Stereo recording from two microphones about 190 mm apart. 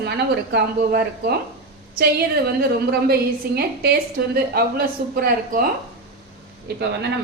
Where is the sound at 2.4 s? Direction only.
55° right (ahead or behind).